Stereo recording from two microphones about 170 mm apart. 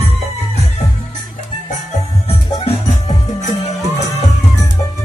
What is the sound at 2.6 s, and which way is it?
Music, 40° left (ahead or behind).